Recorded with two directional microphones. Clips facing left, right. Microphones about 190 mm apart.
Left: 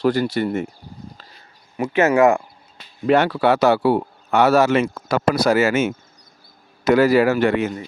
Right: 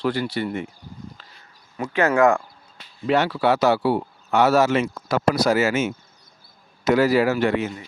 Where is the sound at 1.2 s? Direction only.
40° left (ahead or behind).